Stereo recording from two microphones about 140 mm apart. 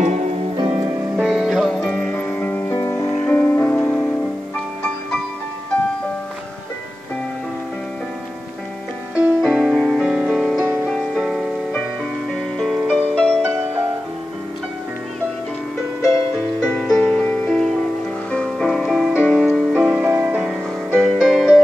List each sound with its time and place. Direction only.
0.0 s music: 50° right (ahead or behind)
0.6 s music: 35° right (ahead or behind)
1.1 s music: 5° right (ahead or behind); by 3.1 s 20° left (ahead or behind)
3.1 s music: 10° left (ahead or behind)
9.1 s music: 5° right (ahead or behind)
12.5 s music: centre (ahead or behind)
16.6 s music: 5° left (ahead or behind)
19.1 s music: 10° left (ahead or behind)
19.4 s music: 5° right (ahead or behind)